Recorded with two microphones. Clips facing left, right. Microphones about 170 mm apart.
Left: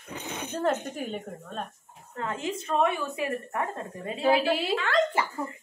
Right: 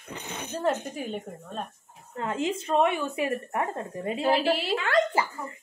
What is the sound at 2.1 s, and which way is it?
A woman's voice, 25° right (ahead or behind).